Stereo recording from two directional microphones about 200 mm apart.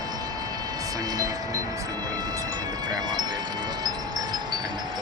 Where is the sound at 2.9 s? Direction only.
20° right (ahead or behind).